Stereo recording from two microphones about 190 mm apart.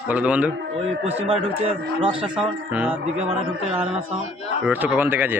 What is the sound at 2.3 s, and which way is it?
Speech, 5° right (ahead or behind).